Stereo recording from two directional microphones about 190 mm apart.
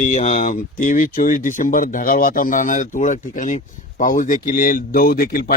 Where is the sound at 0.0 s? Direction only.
40° left (ahead or behind).